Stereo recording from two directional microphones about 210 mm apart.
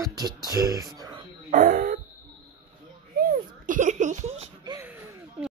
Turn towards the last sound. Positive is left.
turn(degrees=-10)  # may be behind; listen again after turning